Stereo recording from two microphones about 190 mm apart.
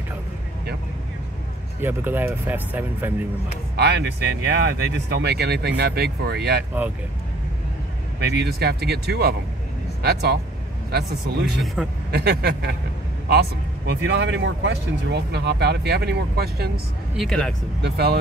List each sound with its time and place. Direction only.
1.8 s speech: 10° right (ahead or behind)
3.7 s speech: 65° right (ahead or behind)
8.2 s speech: 60° right (ahead or behind)
11.6 s speech: centre (ahead or behind)
12.1 s speech: 60° right (ahead or behind)
17.2 s speech: centre (ahead or behind)
17.8 s speech: 55° right (ahead or behind)